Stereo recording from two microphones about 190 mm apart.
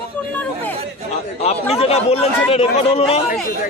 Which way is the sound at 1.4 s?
35° left (ahead or behind).